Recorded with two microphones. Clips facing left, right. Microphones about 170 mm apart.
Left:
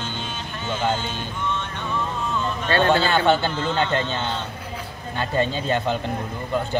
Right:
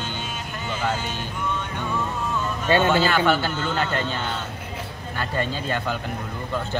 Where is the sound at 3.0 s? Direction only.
25° left (ahead or behind).